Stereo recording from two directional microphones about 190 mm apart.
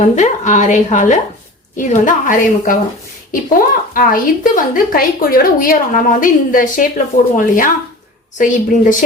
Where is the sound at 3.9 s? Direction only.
45° left (ahead or behind).